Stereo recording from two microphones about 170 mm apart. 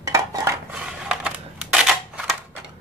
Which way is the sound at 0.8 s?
5° right (ahead or behind).